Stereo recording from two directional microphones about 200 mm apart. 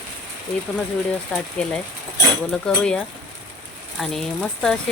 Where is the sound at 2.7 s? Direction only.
5° left (ahead or behind).